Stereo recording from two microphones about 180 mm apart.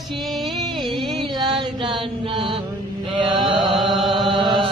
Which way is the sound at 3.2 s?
25° right (ahead or behind).